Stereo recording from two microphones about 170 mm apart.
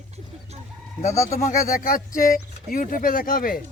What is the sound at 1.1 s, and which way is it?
Speech, 20° left (ahead or behind).